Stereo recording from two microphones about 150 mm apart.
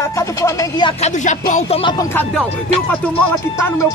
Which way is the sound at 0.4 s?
25° left (ahead or behind).